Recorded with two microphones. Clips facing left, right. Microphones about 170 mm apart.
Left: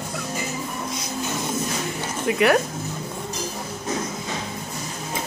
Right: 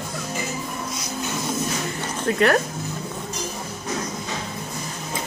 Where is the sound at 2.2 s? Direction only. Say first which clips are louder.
Even; 10° left (ahead or behind).